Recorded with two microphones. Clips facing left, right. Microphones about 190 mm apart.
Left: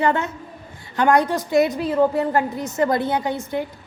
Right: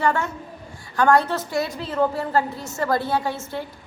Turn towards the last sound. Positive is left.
turn(degrees=15)  # may be behind; listen again after turning